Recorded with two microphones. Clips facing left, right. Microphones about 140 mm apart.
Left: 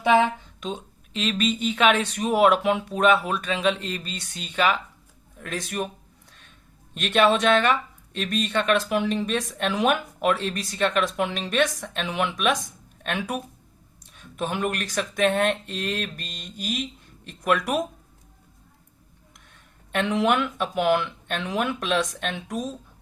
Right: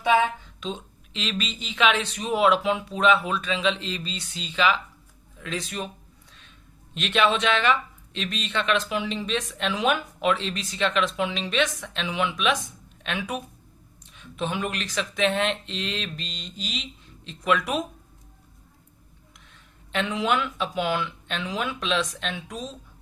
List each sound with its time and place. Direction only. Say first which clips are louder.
1.1 s speech: left 6 dB; 40° left (ahead or behind)
6.9 s speech: left 3 dB; 45° left (ahead or behind)
19.9 s speech: left 3 dB; 60° left (ahead or behind)